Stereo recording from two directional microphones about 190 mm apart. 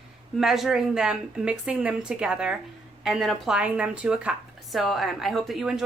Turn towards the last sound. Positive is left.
turn(degrees=0)  # may be behind; listen again after turning